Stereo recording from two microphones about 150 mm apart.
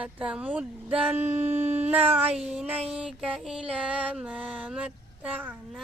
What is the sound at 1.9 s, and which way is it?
Female singing, 10° right (ahead or behind).